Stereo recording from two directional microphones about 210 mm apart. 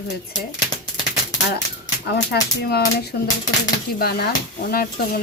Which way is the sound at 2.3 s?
50° left (ahead or behind).